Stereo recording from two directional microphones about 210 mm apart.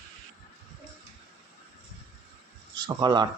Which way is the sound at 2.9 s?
20° right (ahead or behind).